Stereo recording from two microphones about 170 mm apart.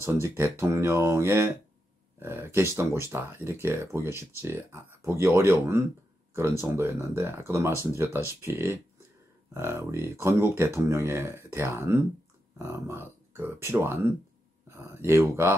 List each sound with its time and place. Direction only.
0.0 s speech: 15° right (ahead or behind)